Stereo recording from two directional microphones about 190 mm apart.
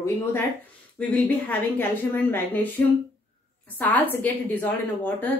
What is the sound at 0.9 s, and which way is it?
Speech, 10° left (ahead or behind).